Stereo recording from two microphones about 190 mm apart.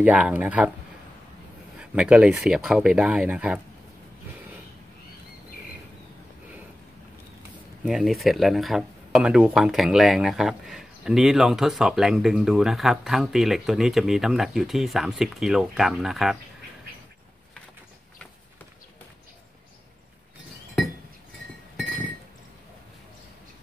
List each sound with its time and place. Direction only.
0.0 s speech: 10° right (ahead or behind)
1.8 s speech: 5° right (ahead or behind)
7.8 s speech: centre (ahead or behind)